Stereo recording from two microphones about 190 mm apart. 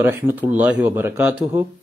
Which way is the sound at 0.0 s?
10° right (ahead or behind).